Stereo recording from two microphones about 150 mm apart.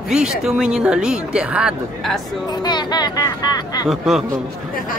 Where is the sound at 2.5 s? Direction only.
30° left (ahead or behind).